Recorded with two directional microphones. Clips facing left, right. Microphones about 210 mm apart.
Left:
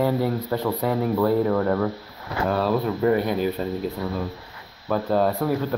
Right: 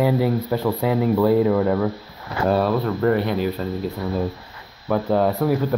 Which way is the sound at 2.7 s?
10° left (ahead or behind).